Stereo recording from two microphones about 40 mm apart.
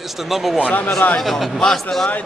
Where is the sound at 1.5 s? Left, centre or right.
Centre.